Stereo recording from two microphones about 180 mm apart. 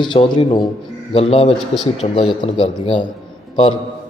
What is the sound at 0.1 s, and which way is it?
A man's voice, 25° left (ahead or behind).